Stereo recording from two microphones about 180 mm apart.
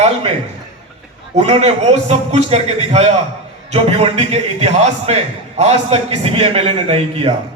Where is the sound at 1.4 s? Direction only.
35° right (ahead or behind).